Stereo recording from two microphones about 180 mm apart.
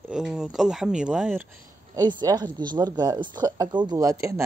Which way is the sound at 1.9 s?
25° right (ahead or behind).